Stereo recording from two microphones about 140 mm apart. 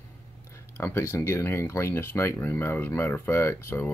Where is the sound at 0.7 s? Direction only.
20° left (ahead or behind).